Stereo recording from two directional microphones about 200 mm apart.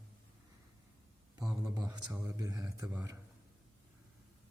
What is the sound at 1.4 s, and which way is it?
A man's voice, 20° right (ahead or behind).